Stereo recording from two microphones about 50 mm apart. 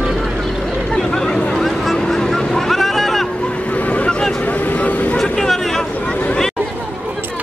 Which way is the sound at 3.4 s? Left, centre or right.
Left.